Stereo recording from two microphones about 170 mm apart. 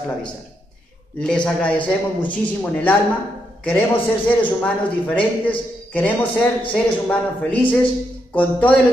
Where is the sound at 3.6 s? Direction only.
10° left (ahead or behind).